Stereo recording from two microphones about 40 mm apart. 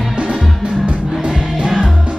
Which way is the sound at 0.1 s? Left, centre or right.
Right.